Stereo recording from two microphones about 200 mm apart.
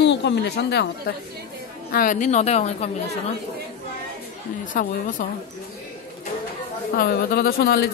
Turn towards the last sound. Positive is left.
turn(degrees=50)  # may be behind; listen again after turning